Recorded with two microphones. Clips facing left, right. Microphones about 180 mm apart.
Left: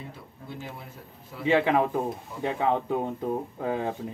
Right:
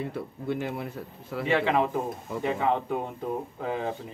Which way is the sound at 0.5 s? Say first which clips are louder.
Right 9 dB; 65° right (ahead or behind).